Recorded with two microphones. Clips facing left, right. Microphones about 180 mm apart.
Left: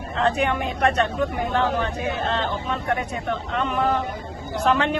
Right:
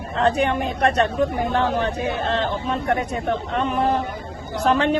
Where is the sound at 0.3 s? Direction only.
35° right (ahead or behind).